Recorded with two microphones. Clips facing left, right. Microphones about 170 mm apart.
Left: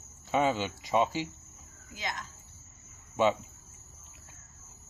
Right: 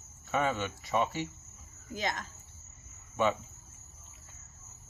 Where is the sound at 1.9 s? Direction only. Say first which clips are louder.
Right 4 dB; 50° right (ahead or behind).